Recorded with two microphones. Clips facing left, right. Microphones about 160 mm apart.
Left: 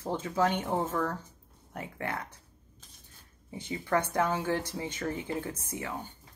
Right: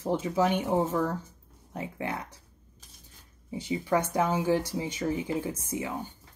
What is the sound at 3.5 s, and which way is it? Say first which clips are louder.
Speech: right 3 dB; 15° right (ahead or behind).